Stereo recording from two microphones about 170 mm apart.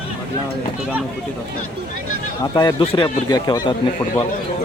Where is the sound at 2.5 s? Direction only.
25° left (ahead or behind).